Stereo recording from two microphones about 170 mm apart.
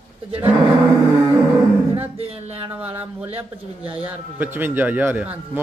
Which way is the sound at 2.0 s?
35° right (ahead or behind).